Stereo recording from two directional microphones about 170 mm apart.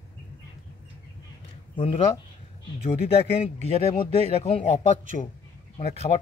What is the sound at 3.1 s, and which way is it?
A man's voice, 35° left (ahead or behind).